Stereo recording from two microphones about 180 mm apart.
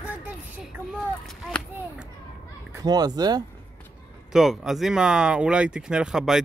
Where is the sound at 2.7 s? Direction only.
20° right (ahead or behind).